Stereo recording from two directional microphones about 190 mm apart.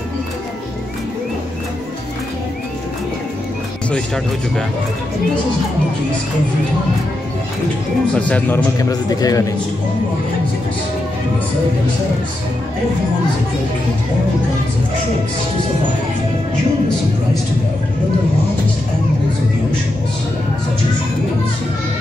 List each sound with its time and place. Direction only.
3.9 s speech: centre (ahead or behind)
8.1 s speech: 5° left (ahead or behind)
9.1 s a man's voice: 20° left (ahead or behind)